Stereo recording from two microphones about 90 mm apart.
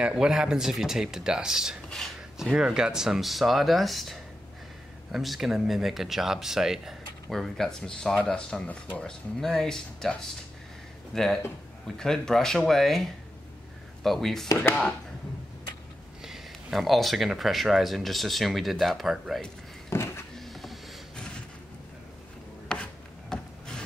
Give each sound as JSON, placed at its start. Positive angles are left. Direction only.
{"t": 0.0, "sound": "speech", "side_deg": -10}
{"t": 11.1, "sound": "speech", "side_deg": 5}
{"t": 16.2, "sound": "speech", "side_deg": 0}
{"t": 19.9, "sound": "a sound", "side_deg": 30}
{"t": 20.3, "sound": "power windows", "side_deg": 0}
{"t": 22.7, "sound": "a sound", "side_deg": 10}